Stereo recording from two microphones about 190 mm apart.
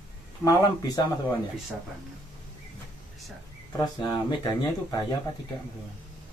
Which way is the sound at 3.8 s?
20° left (ahead or behind).